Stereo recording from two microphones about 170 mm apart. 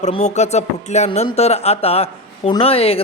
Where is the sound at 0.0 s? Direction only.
40° left (ahead or behind).